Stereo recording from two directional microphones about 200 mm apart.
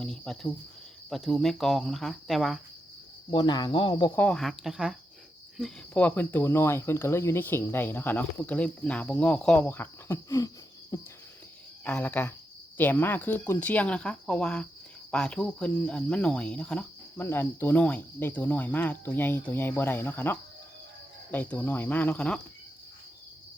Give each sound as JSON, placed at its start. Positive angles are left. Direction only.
{"t": 0.0, "sound": "speech", "side_deg": 5}
{"t": 3.2, "sound": "speech", "side_deg": 20}
{"t": 4.1, "sound": "speech", "side_deg": 5}
{"t": 11.9, "sound": "speech", "side_deg": 10}